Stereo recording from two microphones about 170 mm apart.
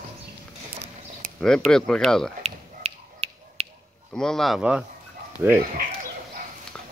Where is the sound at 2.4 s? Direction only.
40° right (ahead or behind).